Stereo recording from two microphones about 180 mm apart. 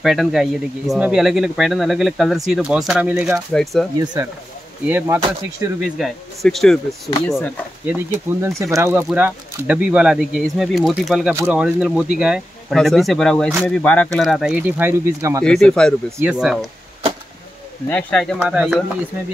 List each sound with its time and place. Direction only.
0.0 s speech: centre (ahead or behind)
4.0 s speech: 25° right (ahead or behind)
4.8 s speech: 10° right (ahead or behind)
5.9 s speech: centre (ahead or behind)
7.1 s speech: 20° left (ahead or behind)
7.8 s speech: 10° right (ahead or behind)
15.4 s speech: 5° left (ahead or behind)
17.8 s speech: 5° left (ahead or behind)